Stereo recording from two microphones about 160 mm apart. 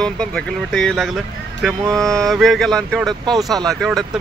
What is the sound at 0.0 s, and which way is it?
Speech, 5° left (ahead or behind).